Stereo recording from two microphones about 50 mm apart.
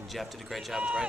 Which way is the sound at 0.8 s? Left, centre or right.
Right.